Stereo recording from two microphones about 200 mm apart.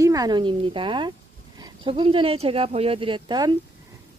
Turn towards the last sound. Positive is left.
turn(degrees=-20)  # may be behind; listen again after turning